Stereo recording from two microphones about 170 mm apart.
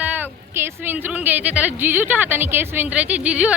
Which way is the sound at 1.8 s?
10° right (ahead or behind).